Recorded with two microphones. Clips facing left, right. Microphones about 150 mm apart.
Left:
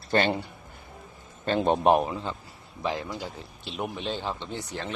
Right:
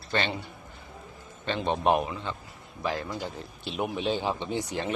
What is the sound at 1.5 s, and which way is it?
Speech, 45° left (ahead or behind).